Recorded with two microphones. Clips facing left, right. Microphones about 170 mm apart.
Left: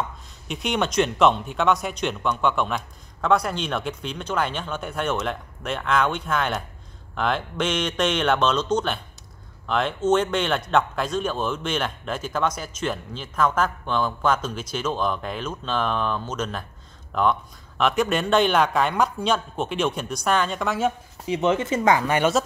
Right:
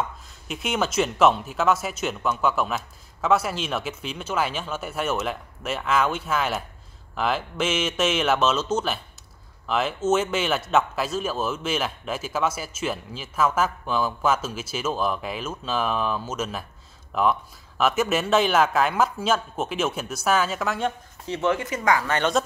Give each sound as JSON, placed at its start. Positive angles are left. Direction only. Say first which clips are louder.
{"t": 0.5, "sound": "a man's voice", "louder": "left 1 dB", "side_deg": 0}
{"t": 21.3, "sound": "speech", "louder": "left 3 dB", "side_deg": 20}
{"t": 22.1, "sound": "speech", "louder": "left 2 dB", "side_deg": 10}